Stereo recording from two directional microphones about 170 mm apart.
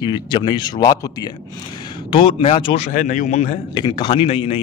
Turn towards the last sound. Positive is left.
turn(degrees=35)  # may be behind; listen again after turning